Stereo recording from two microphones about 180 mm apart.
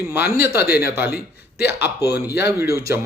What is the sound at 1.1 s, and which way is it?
Speech, 65° left (ahead or behind).